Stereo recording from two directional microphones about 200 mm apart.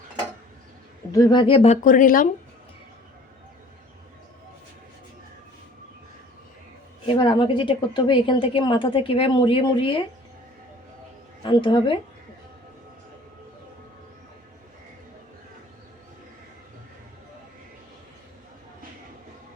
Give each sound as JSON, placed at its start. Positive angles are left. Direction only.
{"t": 1.1, "sound": "a woman's voice", "side_deg": 20}
{"t": 7.1, "sound": "a woman's voice", "side_deg": 25}
{"t": 11.4, "sound": "a woman's voice", "side_deg": 25}